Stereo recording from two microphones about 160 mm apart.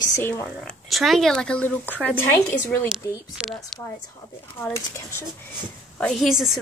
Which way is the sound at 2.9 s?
Centre (ahead or behind).